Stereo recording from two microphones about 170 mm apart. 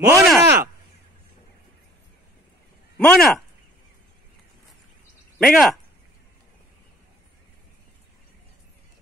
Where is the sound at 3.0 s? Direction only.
5° left (ahead or behind).